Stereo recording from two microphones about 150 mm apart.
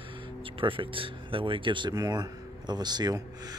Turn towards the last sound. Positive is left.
turn(degrees=-25)  # may be behind; listen again after turning